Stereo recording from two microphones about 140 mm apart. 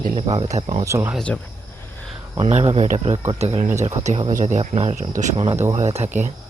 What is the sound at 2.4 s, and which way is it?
Speech, 45° right (ahead or behind).